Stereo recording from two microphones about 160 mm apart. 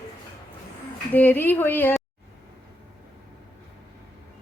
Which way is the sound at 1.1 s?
10° left (ahead or behind).